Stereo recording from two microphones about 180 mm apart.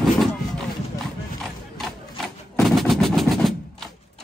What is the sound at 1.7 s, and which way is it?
Gunshot, centre (ahead or behind).